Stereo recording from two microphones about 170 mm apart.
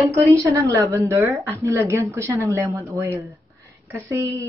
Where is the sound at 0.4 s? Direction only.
15° right (ahead or behind).